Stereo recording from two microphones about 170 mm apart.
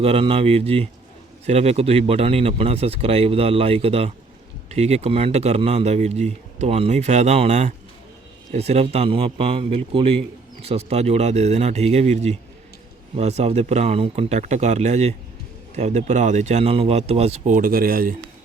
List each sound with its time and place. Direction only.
0.0 s speech: 35° right (ahead or behind); by 18.2 s 55° right (ahead or behind)